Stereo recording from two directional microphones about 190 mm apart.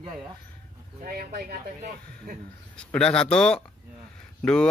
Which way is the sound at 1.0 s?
50° right (ahead or behind).